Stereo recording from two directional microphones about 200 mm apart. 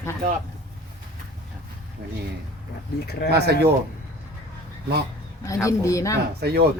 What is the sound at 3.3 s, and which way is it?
Speech, 55° right (ahead or behind).